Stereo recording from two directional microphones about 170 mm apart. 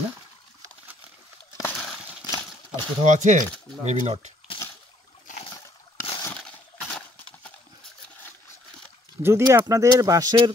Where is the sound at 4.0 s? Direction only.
35° right (ahead or behind).